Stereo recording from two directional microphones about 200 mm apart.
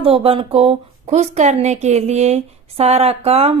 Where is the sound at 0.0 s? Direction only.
30° right (ahead or behind).